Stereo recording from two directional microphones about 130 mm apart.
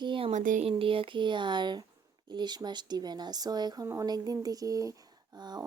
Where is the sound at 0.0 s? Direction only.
40° right (ahead or behind).